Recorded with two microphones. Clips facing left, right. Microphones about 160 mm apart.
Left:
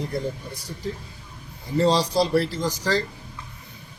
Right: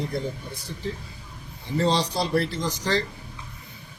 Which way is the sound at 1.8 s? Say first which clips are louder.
Left 4 dB; 35° left (ahead or behind).